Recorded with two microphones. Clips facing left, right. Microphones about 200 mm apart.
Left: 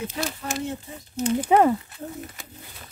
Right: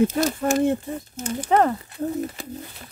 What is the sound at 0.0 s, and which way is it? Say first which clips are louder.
Speech: right 10 dB; 45° right (ahead or behind).